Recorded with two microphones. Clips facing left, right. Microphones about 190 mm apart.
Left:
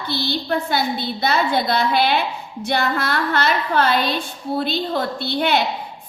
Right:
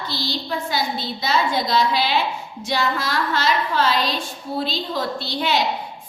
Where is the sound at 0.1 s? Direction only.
60° left (ahead or behind).